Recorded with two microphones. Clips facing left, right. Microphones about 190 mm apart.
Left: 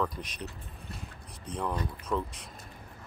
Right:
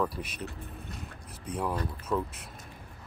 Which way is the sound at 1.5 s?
5° right (ahead or behind).